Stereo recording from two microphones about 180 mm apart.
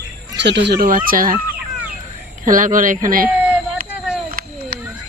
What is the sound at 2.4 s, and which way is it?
Speech, 45° right (ahead or behind).